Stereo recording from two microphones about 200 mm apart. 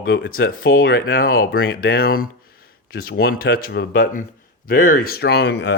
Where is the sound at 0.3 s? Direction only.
45° left (ahead or behind).